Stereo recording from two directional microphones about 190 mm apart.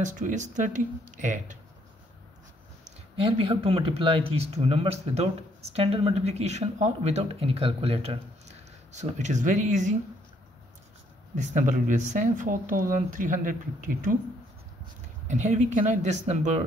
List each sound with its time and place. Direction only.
0.0 s speech: 40° right (ahead or behind)
3.2 s speech: 30° right (ahead or behind)
11.3 s speech: 40° right (ahead or behind)
15.2 s speech: 40° right (ahead or behind)